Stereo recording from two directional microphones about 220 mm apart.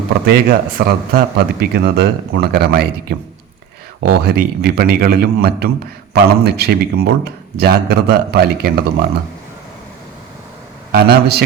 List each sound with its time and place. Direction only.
0.3 s a man's voice: 45° right (ahead or behind)
10.9 s a man's voice: 45° right (ahead or behind)